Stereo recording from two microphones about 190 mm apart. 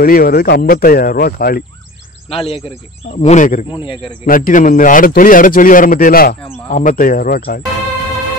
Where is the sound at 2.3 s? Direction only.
30° left (ahead or behind).